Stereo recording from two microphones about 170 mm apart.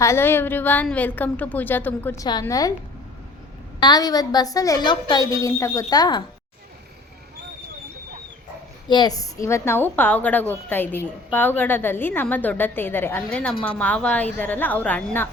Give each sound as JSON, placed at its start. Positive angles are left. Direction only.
{"t": 0.0, "sound": "a woman's voice", "side_deg": 15}
{"t": 2.2, "sound": "a woman's voice", "side_deg": 25}
{"t": 3.8, "sound": "a woman's voice", "side_deg": 25}
{"t": 8.9, "sound": "a woman's voice", "side_deg": 25}